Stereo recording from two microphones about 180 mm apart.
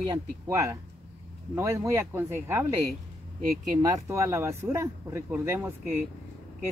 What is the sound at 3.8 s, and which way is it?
Speech, 15° right (ahead or behind).